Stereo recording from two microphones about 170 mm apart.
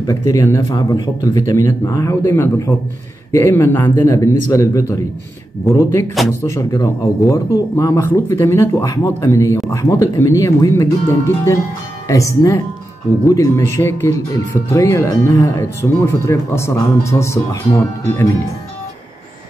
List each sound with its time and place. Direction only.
0.3 s speech: 20° left (ahead or behind)
6.2 s speech: centre (ahead or behind)
6.5 s speech: 20° left (ahead or behind)